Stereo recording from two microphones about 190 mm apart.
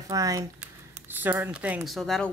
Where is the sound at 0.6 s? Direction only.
10° right (ahead or behind).